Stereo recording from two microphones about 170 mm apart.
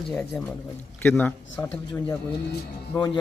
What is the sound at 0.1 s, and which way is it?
A man's voice, 5° left (ahead or behind).